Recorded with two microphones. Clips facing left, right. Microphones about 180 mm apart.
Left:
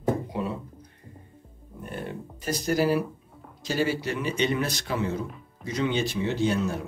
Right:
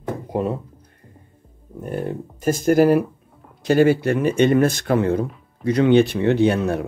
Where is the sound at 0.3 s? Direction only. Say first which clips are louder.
Right 8 dB; 50° right (ahead or behind).